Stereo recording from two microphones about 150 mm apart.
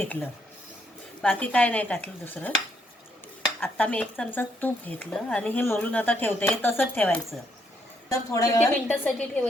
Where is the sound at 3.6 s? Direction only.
10° left (ahead or behind).